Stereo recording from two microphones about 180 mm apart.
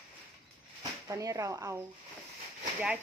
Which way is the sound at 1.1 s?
15° right (ahead or behind).